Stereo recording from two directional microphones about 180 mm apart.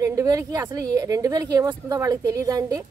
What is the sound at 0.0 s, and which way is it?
A woman's voice, 15° right (ahead or behind).